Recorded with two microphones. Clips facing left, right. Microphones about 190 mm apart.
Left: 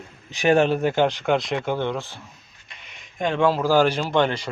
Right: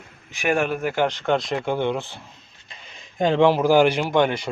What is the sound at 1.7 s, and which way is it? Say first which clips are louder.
Speech: right 2 dB; 10° right (ahead or behind).